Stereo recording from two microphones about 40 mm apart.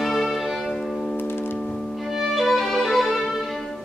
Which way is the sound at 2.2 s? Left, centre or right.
Centre.